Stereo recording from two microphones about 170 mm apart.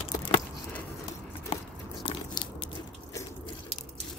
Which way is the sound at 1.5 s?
30° left (ahead or behind).